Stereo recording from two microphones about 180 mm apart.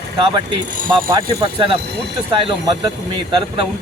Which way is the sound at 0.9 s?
30° right (ahead or behind).